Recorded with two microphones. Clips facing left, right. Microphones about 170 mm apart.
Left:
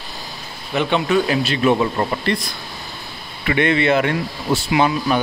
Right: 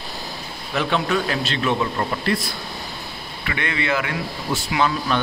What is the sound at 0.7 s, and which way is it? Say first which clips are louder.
Speech: left 4 dB; centre (ahead or behind).